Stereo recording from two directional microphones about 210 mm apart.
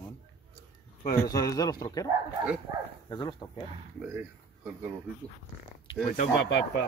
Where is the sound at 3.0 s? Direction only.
20° left (ahead or behind).